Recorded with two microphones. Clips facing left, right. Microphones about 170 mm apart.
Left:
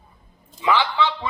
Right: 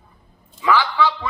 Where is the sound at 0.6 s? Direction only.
20° left (ahead or behind).